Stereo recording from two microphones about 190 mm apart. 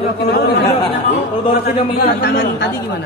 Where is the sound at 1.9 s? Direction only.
55° left (ahead or behind).